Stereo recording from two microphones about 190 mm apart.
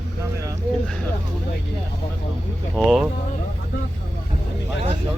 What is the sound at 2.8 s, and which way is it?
Speech, centre (ahead or behind).